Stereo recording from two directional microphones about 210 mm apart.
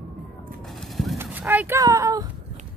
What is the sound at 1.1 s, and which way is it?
Speech, 10° right (ahead or behind).